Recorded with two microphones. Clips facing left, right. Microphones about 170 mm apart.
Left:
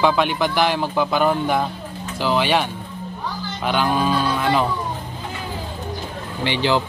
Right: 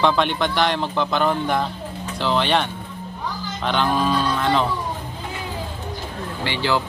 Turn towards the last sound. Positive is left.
turn(degrees=20)  # may be behind; listen again after turning